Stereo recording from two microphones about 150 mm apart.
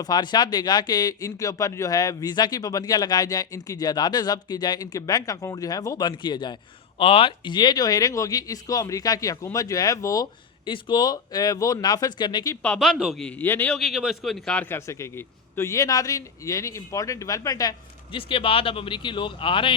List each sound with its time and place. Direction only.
0.0 s speech: 30° left (ahead or behind)
12.6 s a man's voice: 5° left (ahead or behind)
13.7 s speech: centre (ahead or behind); by 18.2 s 25° left (ahead or behind)
18.2 s speech: 35° left (ahead or behind)